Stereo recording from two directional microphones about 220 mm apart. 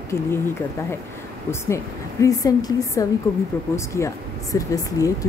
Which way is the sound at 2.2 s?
15° left (ahead or behind).